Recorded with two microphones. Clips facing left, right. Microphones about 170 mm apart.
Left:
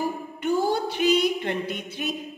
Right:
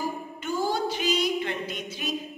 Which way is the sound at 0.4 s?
60° left (ahead or behind).